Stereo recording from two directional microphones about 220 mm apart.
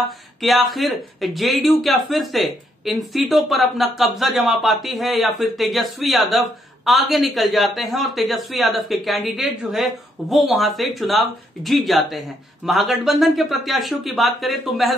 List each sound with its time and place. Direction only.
0.0 s speech: centre (ahead or behind)